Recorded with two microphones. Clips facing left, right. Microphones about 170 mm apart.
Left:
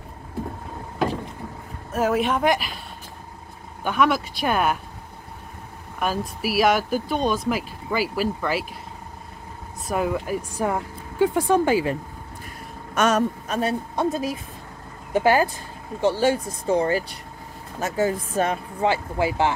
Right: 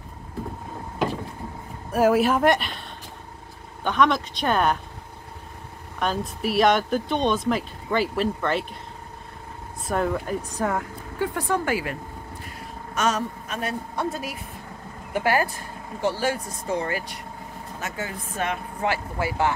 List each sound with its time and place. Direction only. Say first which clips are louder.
1.9 s speech: right 3 dB; 10° right (ahead or behind)
3.8 s speech: even; 5° left (ahead or behind)
5.9 s speech: left 1 dB; 5° left (ahead or behind)
9.8 s speech: left 1 dB; 5° left (ahead or behind)
10.6 s speech: left 1 dB; 20° left (ahead or behind)
12.9 s speech: left 4 dB; 60° left (ahead or behind)
13.5 s speech: left 5 dB; 30° left (ahead or behind)
18.8 s speech: left 5 dB; 20° left (ahead or behind)